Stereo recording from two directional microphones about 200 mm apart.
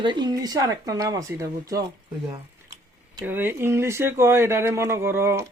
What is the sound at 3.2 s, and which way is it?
Speech, 10° right (ahead or behind).